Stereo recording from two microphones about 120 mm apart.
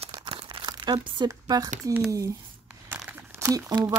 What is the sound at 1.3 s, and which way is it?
Speech, 30° right (ahead or behind).